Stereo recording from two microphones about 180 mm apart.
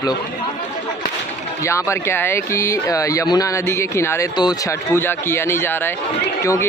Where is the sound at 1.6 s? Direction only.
15° left (ahead or behind).